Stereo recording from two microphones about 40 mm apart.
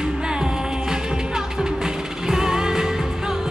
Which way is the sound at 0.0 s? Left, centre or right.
Centre.